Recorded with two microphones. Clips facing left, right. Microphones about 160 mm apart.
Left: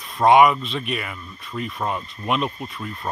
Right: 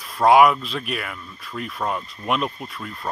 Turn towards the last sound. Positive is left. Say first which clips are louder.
# left 2 dB
turn(degrees=0)  # may be behind; listen again after turning